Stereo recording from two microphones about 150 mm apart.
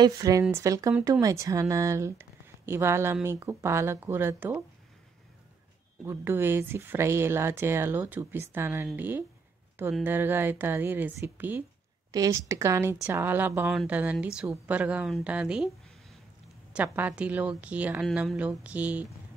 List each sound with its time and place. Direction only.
0.0 s speech: 25° right (ahead or behind)
6.0 s speech: 15° right (ahead or behind)
12.1 s speech: 25° right (ahead or behind); by 15.7 s 5° right (ahead or behind)
16.7 s speech: 10° right (ahead or behind)